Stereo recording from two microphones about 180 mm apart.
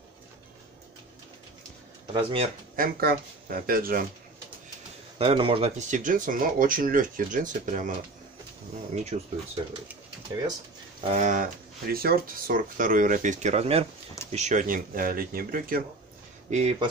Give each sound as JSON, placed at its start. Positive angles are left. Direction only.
{"t": 2.1, "sound": "speech", "side_deg": -30}
{"t": 2.7, "sound": "speech", "side_deg": -55}
{"t": 5.2, "sound": "speech", "side_deg": -30}
{"t": 9.1, "sound": "speech", "side_deg": -35}
{"t": 11.1, "sound": "speech", "side_deg": -45}
{"t": 11.9, "sound": "speech", "side_deg": -55}
{"t": 16.4, "sound": "speech", "side_deg": -35}